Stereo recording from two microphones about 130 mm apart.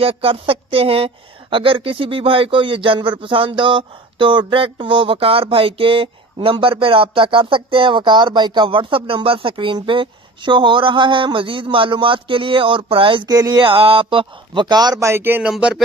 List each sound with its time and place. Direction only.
0.0 s speech: 45° right (ahead or behind); by 15.5 s 15° right (ahead or behind)
15.5 s speech: 5° right (ahead or behind)